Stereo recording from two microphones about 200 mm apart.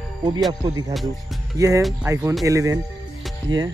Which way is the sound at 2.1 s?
15° right (ahead or behind).